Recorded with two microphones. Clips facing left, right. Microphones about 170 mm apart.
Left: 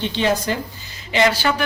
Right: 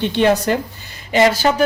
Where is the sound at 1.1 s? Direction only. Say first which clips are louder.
Right 4 dB; 45° right (ahead or behind).